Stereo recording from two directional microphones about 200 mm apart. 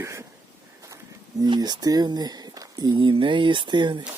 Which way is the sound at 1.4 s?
20° right (ahead or behind).